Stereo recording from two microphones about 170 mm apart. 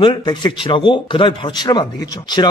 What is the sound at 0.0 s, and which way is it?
Speech, 25° left (ahead or behind).